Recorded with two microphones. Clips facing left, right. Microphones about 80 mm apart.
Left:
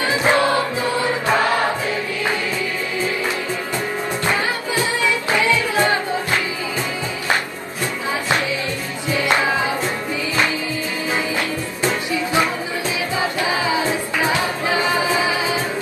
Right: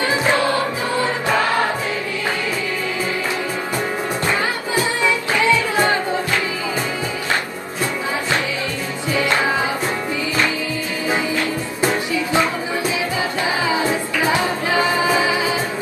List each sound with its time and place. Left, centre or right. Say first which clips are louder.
5.0 s music: right 1 dB; right
14.3 s music: right 1 dB; right